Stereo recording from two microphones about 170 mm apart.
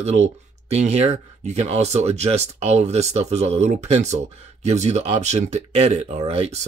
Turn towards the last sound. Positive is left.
turn(degrees=-35)  # may be behind; listen again after turning